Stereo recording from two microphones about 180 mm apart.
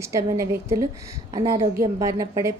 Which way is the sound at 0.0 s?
15° right (ahead or behind).